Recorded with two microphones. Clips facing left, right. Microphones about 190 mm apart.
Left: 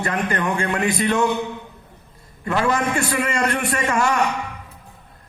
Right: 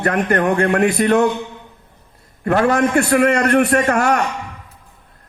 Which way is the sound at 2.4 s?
60° right (ahead or behind).